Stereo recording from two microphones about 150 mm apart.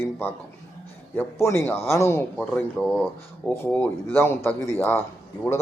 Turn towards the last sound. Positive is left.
turn(degrees=15)  # may be behind; listen again after turning